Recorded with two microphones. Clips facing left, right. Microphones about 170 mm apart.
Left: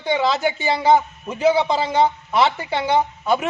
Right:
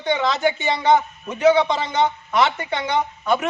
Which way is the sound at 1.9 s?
30° left (ahead or behind).